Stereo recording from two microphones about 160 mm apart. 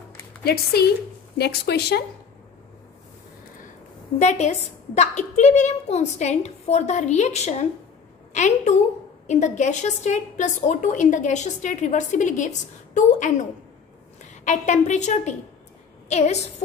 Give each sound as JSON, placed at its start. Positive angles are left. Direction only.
{"t": 0.4, "sound": "speech", "side_deg": 80}
{"t": 4.2, "sound": "a woman's voice", "side_deg": 45}